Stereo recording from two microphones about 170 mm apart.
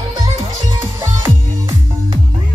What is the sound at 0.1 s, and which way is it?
Music, 25° right (ahead or behind).